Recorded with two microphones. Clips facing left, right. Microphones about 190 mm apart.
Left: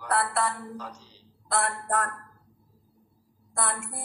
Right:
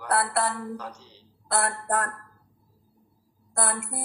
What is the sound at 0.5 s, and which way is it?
Speech, 65° right (ahead or behind).